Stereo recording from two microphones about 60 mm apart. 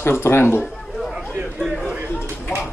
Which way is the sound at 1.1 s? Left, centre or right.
Centre.